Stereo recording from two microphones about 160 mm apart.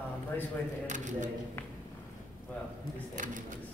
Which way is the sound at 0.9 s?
50° right (ahead or behind).